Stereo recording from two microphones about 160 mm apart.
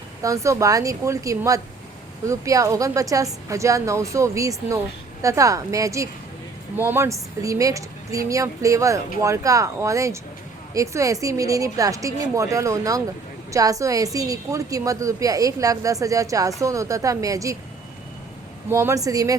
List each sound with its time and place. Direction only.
0.2 s a woman's voice: 20° right (ahead or behind)
18.7 s a woman's voice: 15° right (ahead or behind)